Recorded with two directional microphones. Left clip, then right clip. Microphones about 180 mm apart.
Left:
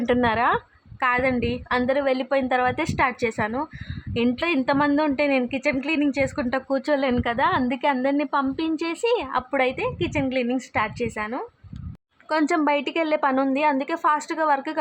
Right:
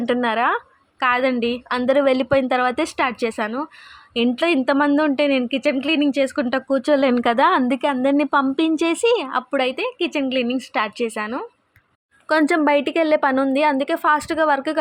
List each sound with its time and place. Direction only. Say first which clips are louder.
0.0 s a woman's voice: right 2 dB; 15° right (ahead or behind)